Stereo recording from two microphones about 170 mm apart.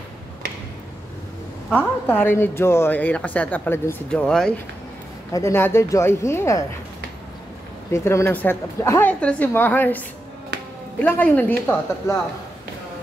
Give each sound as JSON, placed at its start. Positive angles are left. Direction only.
{"t": 1.7, "sound": "speech", "side_deg": 10}
{"t": 5.3, "sound": "speech", "side_deg": 15}
{"t": 7.9, "sound": "speech", "side_deg": 15}